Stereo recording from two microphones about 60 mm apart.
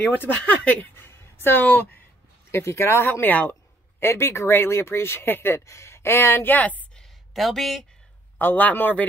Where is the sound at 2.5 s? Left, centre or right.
Left.